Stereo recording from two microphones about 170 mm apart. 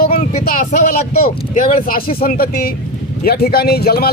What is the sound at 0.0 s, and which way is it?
Speech, 60° left (ahead or behind).